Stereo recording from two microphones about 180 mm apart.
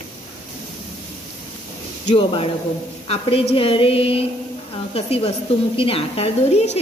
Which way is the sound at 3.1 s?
35° left (ahead or behind).